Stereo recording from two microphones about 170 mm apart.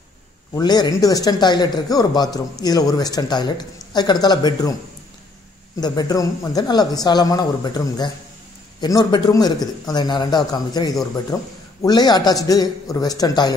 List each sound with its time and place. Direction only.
0.6 s speech: 25° left (ahead or behind)
5.8 s speech: 20° left (ahead or behind)